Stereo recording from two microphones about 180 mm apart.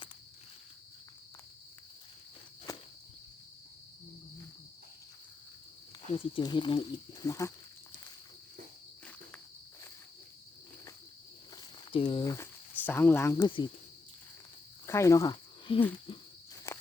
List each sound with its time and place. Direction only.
6.1 s speech: 30° left (ahead or behind)
11.5 s snake: 30° left (ahead or behind)
12.2 s speech: 15° left (ahead or behind)
14.8 s speech: 15° left (ahead or behind)
16.1 s a sound: 30° left (ahead or behind)